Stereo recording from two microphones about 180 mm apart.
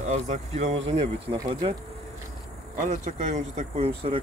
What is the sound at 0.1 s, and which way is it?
Speech, 40° right (ahead or behind).